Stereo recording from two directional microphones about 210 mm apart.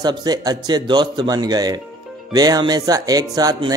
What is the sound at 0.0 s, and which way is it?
Speech, 20° right (ahead or behind).